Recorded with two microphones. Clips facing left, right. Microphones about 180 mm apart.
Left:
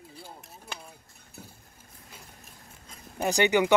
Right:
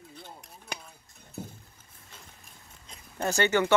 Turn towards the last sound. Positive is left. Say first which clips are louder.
# left 2 dB
turn(degrees=15)  # may be behind; listen again after turning